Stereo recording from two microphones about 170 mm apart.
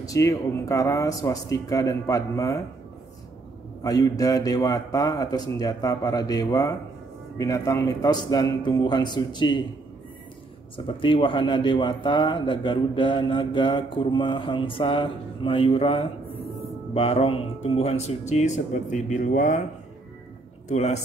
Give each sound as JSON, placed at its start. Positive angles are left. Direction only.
{"t": 0.0, "sound": "a man's voice", "side_deg": 20}
{"t": 3.8, "sound": "a man's voice", "side_deg": 20}
{"t": 10.9, "sound": "a man's voice", "side_deg": 30}
{"t": 20.6, "sound": "a man's voice", "side_deg": 40}